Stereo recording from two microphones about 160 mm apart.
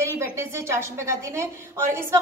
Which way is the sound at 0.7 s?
15° right (ahead or behind).